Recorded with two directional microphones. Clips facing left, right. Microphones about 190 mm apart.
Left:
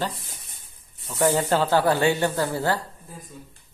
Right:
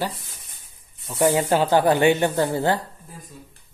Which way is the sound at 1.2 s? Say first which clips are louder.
Right 2 dB; 15° right (ahead or behind).